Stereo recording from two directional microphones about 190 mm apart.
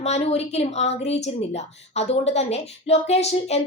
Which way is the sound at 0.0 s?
35° left (ahead or behind).